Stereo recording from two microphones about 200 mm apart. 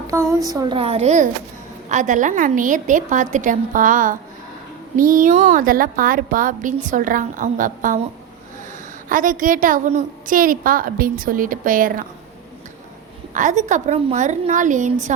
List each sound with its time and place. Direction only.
0.1 s a woman's voice: 15° right (ahead or behind); by 7.9 s 40° right (ahead or behind)
9.0 s a woman's voice: 40° right (ahead or behind)
13.3 s a woman's voice: 40° right (ahead or behind)